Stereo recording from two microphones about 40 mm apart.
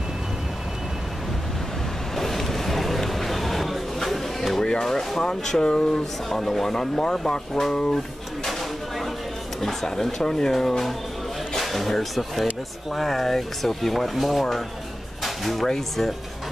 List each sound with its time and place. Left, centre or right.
2.1 s vehicle: centre
4.6 s speech: centre
6.2 s speech: centre
9.6 s speech: centre
15.2 s a sound: centre
15.6 s speech: centre